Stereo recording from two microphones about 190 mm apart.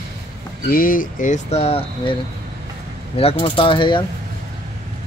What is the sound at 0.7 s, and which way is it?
Speech, 50° left (ahead or behind).